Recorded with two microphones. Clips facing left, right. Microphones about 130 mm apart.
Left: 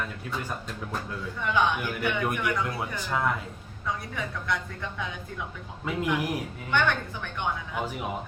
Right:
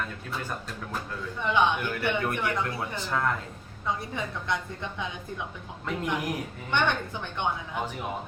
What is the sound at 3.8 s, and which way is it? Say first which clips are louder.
A woman's voice: right 1 dB; 25° right (ahead or behind).